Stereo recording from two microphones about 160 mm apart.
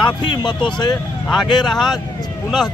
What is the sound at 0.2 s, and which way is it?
Speech, 30° left (ahead or behind).